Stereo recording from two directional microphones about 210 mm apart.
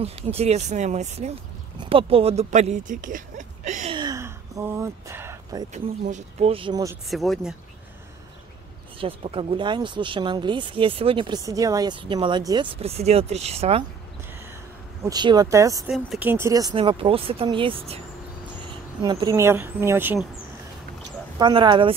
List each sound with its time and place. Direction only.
0.0 s speech: 30° right (ahead or behind)
5.7 s speech: 35° right (ahead or behind); by 7.0 s 15° right (ahead or behind)
7.1 s speech: centre (ahead or behind)
9.0 s speech: 25° right (ahead or behind)
15.0 s speech: 20° right (ahead or behind)
19.0 s speech: 20° right (ahead or behind)
21.4 s speech: 20° right (ahead or behind)